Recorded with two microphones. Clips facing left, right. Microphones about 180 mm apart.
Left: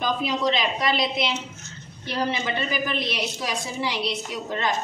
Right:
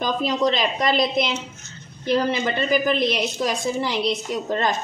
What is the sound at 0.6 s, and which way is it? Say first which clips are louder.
Speech: right 3 dB; 45° right (ahead or behind).